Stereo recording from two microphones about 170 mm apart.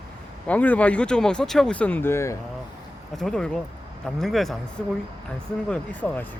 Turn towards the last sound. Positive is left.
turn(degrees=5)  # may be behind; listen again after turning